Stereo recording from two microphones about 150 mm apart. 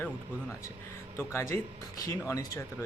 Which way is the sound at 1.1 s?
15° left (ahead or behind).